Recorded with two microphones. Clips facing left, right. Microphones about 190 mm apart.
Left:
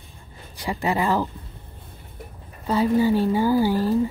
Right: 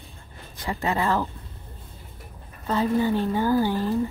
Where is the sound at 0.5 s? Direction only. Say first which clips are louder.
Left 2 dB; 10° left (ahead or behind).